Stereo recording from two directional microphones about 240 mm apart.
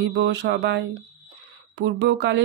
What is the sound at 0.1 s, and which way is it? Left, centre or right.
Speech, right.